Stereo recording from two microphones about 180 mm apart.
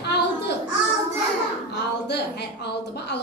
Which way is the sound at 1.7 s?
65° left (ahead or behind).